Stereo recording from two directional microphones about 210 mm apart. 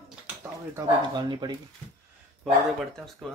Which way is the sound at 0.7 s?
20° right (ahead or behind).